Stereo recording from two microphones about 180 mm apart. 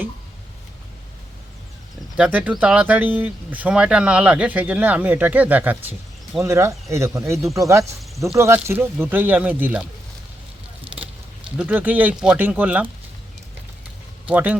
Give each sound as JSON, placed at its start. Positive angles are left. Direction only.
{"t": 2.1, "sound": "speech", "side_deg": -5}
{"t": 11.5, "sound": "speech", "side_deg": -5}
{"t": 14.3, "sound": "speech", "side_deg": -10}